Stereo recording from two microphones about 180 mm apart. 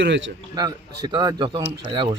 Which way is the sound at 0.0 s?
80° right.